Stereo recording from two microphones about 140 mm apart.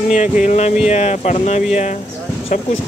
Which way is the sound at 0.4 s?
60° left (ahead or behind).